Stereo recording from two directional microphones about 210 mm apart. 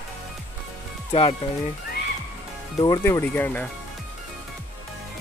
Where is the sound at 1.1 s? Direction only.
30° left (ahead or behind).